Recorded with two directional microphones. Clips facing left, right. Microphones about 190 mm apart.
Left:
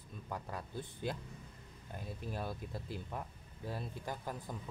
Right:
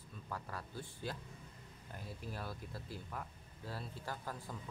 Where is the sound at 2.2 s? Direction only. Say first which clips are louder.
Left 5 dB; 20° left (ahead or behind).